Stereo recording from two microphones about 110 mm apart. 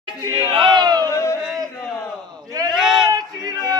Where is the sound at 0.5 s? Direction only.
45° right (ahead or behind).